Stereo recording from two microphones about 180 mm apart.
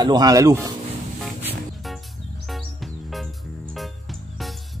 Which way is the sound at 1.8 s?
Centre (ahead or behind).